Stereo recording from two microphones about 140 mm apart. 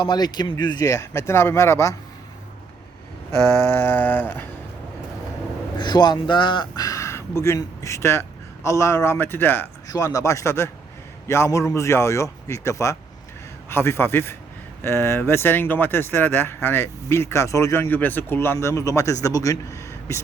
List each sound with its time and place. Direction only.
0.0 s speech: 30° left (ahead or behind)
3.7 s speech: 15° left (ahead or behind)
5.7 s speech: 30° left (ahead or behind)